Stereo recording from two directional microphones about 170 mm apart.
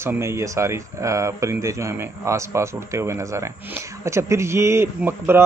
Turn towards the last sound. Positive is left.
turn(degrees=-15)  # may be behind; listen again after turning